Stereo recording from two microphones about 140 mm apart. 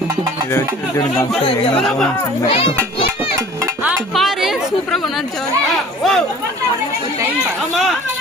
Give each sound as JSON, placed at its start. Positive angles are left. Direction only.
{"t": 0.5, "sound": "speech", "side_deg": 20}
{"t": 2.5, "sound": "a child's voice", "side_deg": 40}
{"t": 3.8, "sound": "a sound", "side_deg": 0}
{"t": 6.0, "sound": "chatter", "side_deg": 0}